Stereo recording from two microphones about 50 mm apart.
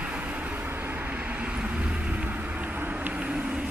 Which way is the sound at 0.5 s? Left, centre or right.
Right.